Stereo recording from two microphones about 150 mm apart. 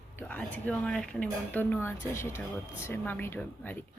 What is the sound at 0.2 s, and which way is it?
Speech, 10° left (ahead or behind).